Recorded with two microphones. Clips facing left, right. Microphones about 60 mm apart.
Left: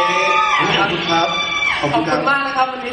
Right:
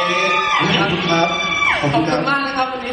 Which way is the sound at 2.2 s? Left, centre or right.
Centre.